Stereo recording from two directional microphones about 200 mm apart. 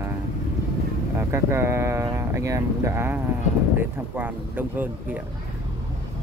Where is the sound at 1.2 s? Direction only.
15° right (ahead or behind).